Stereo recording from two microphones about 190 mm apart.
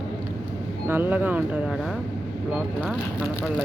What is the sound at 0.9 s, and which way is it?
Speech, 10° right (ahead or behind).